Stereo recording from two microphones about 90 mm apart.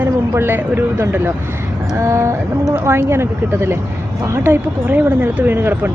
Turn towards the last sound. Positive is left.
turn(degrees=-25)  # may be behind; listen again after turning